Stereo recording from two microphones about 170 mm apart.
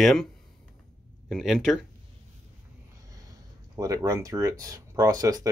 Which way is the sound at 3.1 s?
20° right (ahead or behind).